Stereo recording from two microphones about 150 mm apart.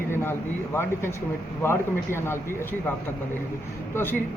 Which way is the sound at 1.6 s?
15° left (ahead or behind).